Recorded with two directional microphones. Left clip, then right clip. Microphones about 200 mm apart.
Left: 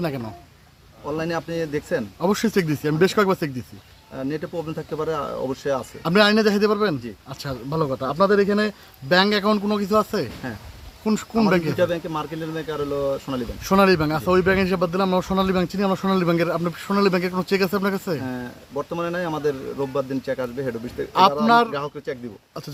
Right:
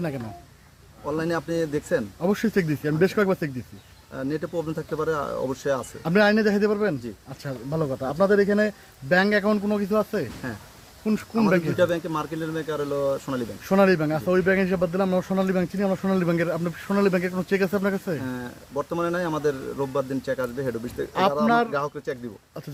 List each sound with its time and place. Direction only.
1.0 s a man's voice: centre (ahead or behind)
2.2 s a man's voice: 20° left (ahead or behind)
4.1 s a man's voice: 5° left (ahead or behind)
6.0 s a man's voice: 20° left (ahead or behind)
7.8 s speech: 10° left (ahead or behind)
10.4 s speech: 5° left (ahead or behind)
11.8 s a man's voice: centre (ahead or behind)
13.7 s a man's voice: 20° left (ahead or behind); by 20.9 s 5° left (ahead or behind)
21.1 s a man's voice: 20° left (ahead or behind)
21.7 s a man's voice: centre (ahead or behind)